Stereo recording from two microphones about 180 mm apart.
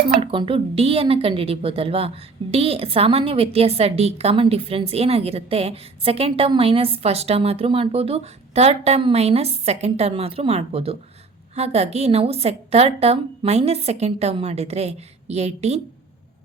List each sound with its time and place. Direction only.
0.2 s a woman's voice: 30° right (ahead or behind)